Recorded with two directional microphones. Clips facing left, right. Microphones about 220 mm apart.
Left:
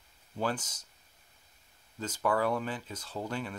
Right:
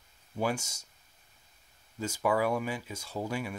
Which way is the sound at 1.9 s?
10° right (ahead or behind).